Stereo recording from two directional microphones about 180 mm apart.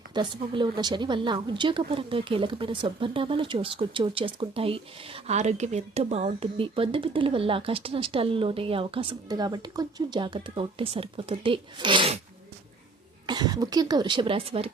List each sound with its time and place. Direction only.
0.1 s a woman's voice: 25° right (ahead or behind)
13.2 s a woman's voice: 20° right (ahead or behind)